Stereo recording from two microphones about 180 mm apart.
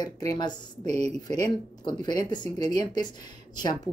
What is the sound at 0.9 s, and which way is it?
Speech, 40° right (ahead or behind).